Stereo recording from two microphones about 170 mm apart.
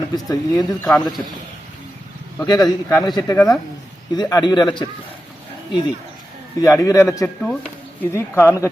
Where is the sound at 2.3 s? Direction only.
25° left (ahead or behind).